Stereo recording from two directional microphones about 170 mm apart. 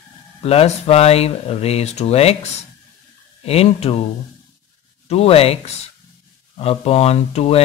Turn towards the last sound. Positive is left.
turn(degrees=35)  # may be behind; listen again after turning